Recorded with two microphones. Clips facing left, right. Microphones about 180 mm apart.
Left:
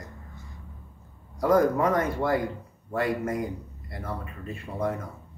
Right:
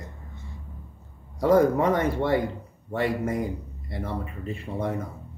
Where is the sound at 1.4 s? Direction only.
30° right (ahead or behind).